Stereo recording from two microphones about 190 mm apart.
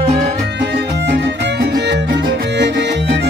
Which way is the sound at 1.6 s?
55° right (ahead or behind).